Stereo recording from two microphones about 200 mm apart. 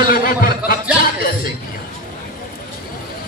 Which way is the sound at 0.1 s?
45° left (ahead or behind).